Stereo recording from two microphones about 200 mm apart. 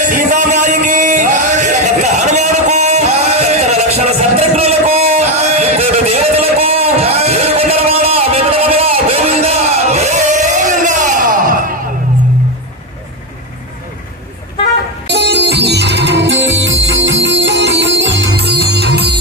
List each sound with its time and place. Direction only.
0.0 s a sound: 40° right (ahead or behind)
15.0 s music: 60° right (ahead or behind)
18.3 s music: 55° right (ahead or behind)